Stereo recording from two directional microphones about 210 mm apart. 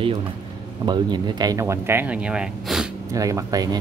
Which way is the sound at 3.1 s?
15° right (ahead or behind).